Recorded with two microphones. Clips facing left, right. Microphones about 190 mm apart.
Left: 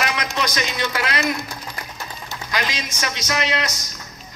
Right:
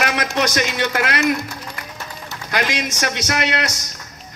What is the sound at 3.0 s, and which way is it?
Speech, 60° right (ahead or behind).